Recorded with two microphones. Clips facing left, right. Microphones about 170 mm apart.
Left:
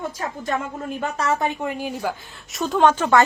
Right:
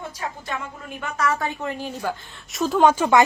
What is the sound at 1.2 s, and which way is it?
Speech, 20° left (ahead or behind).